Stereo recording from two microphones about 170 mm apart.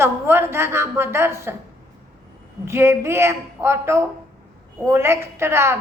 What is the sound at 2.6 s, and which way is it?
A woman's voice, 15° right (ahead or behind).